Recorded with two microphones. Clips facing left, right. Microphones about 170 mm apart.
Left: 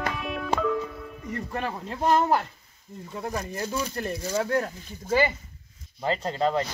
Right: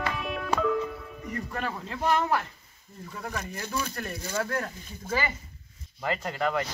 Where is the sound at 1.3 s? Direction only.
30° left (ahead or behind).